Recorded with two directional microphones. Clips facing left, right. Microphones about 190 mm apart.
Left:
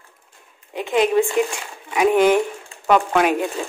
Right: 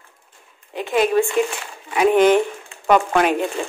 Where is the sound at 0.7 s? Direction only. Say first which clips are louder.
Even; 15° left (ahead or behind).